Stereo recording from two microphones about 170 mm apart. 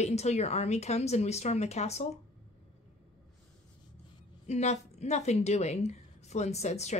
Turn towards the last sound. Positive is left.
turn(degrees=40)  # may be behind; listen again after turning